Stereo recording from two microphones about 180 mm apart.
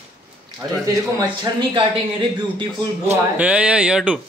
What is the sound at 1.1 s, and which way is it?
Speech, 25° right (ahead or behind).